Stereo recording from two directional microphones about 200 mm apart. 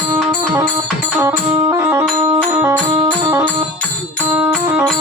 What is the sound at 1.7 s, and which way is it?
Music, 10° right (ahead or behind).